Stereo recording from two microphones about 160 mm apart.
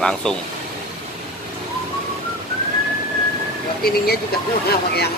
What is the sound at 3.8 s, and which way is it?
Speech, 75° left (ahead or behind).